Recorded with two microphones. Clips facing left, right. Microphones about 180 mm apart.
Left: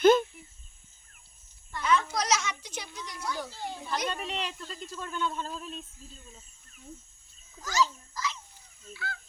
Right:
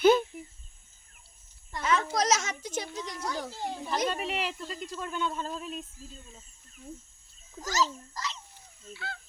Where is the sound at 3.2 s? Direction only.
40° right (ahead or behind).